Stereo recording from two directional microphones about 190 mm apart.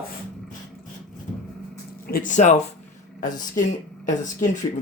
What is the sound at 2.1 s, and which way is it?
Speech, 45° left (ahead or behind).